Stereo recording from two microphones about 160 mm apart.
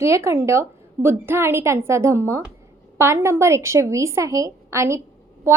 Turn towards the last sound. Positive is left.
turn(degrees=-15)  # may be behind; listen again after turning